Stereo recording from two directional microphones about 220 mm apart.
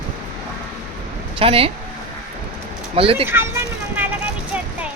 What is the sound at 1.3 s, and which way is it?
Speech, 25° right (ahead or behind).